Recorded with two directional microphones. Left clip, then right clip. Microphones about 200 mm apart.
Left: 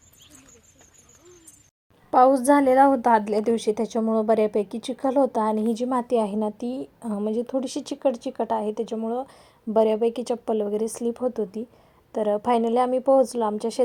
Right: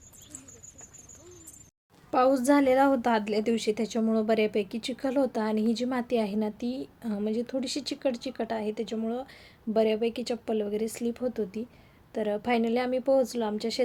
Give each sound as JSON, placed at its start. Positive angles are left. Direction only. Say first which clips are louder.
{"t": 2.0, "sound": "a woman's voice", "louder": "left 6 dB", "side_deg": 5}
{"t": 7.6, "sound": "speech", "louder": "left 2 dB", "side_deg": 65}
{"t": 8.0, "sound": "a woman's voice", "louder": "left 8 dB", "side_deg": 5}